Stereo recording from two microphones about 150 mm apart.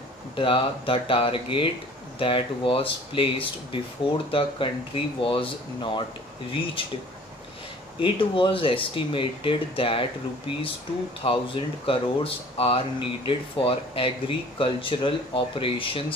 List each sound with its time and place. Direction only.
0.4 s speech: 35° left (ahead or behind)
8.0 s speech: 35° left (ahead or behind)